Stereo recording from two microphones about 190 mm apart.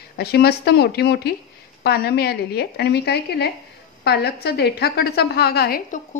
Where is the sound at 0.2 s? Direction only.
55° left (ahead or behind).